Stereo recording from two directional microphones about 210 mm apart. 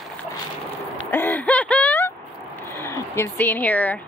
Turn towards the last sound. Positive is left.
turn(degrees=5)  # may be behind; listen again after turning